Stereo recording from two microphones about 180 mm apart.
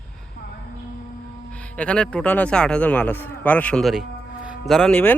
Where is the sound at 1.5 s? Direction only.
5° left (ahead or behind).